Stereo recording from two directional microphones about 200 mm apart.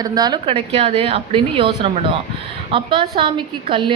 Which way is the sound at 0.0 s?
20° right (ahead or behind).